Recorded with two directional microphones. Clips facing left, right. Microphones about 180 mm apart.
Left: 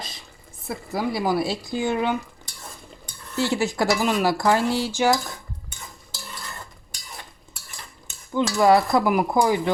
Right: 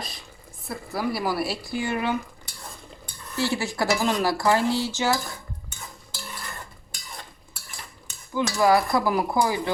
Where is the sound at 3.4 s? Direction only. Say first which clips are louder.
Left 3 dB; 15° left (ahead or behind).